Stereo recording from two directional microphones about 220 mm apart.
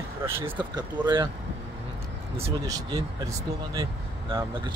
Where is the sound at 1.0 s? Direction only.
20° right (ahead or behind).